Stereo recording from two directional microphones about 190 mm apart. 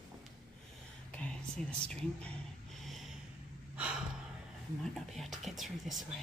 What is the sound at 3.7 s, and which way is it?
Gasp, 5° right (ahead or behind).